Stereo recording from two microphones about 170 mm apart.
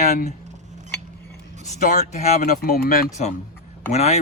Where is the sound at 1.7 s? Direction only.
45° left (ahead or behind).